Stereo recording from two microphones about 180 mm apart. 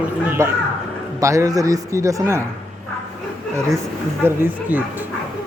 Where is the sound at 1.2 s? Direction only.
15° right (ahead or behind).